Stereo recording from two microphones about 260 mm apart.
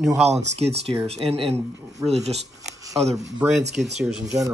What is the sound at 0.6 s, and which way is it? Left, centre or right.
Speech, right.